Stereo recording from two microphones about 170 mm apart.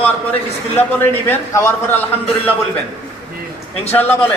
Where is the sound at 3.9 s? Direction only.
10° left (ahead or behind).